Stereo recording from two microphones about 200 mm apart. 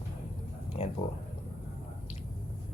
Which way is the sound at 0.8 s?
30° left (ahead or behind).